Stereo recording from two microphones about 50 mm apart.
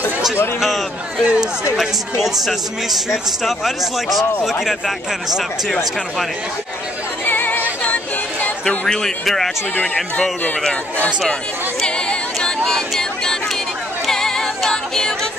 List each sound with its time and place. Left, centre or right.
0.6 s a man's voice: centre
1.2 s speech: centre
2.2 s a man's voice: centre
7.2 s a capella: left
8.6 s speech: centre
12.4 s a sound: centre
14.0 s music: centre